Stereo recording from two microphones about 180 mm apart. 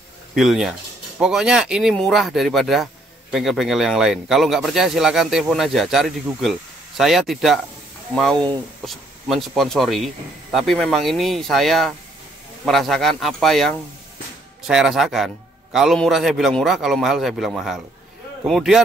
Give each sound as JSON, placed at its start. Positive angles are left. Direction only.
{"t": 0.3, "sound": "speech", "side_deg": 0}